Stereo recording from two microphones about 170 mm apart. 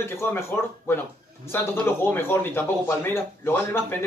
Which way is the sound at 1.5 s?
10° left (ahead or behind).